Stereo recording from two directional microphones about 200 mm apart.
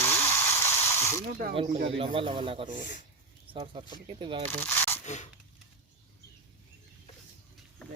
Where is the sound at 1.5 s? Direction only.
25° right (ahead or behind).